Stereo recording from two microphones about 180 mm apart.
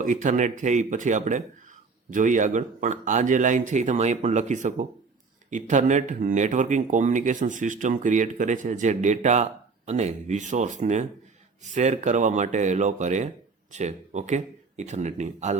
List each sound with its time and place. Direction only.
0.0 s speech: 45° right (ahead or behind)